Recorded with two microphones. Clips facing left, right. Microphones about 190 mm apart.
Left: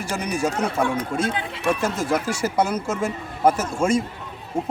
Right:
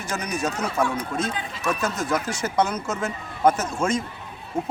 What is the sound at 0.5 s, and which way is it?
Speech, 55° left (ahead or behind).